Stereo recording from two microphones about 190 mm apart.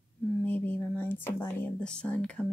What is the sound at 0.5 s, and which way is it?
Speech, 10° left (ahead or behind).